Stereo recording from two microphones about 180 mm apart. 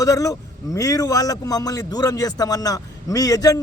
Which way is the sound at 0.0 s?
20° left (ahead or behind).